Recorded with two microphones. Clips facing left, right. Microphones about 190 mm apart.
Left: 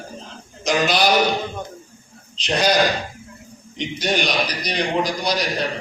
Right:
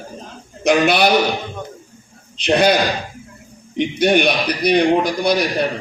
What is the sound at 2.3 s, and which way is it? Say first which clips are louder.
Speech: right 6 dB; 60° right (ahead or behind).